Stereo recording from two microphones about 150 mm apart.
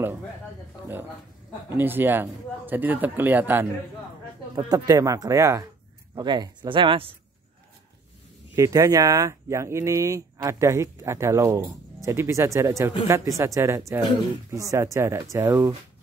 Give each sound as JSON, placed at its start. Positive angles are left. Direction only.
{"t": 1.7, "sound": "speech", "side_deg": -15}
{"t": 4.6, "sound": "speech", "side_deg": -25}
{"t": 8.5, "sound": "speech", "side_deg": -20}